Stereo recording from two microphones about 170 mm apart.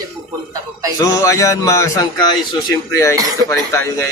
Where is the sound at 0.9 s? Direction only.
20° left (ahead or behind).